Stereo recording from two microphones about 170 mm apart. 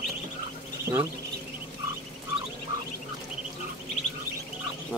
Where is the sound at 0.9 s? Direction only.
25° right (ahead or behind).